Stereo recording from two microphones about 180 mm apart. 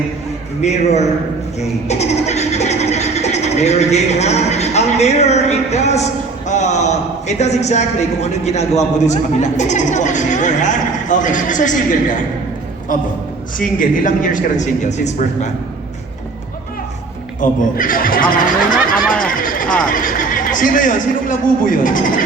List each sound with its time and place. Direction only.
0.6 s a man's voice: 40° left (ahead or behind)
17.4 s speech: 50° left (ahead or behind)
19.2 s a sound: 50° left (ahead or behind)
19.9 s speech: 50° left (ahead or behind)